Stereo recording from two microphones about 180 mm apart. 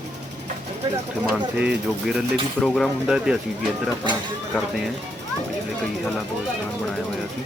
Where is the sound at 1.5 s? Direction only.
5° right (ahead or behind).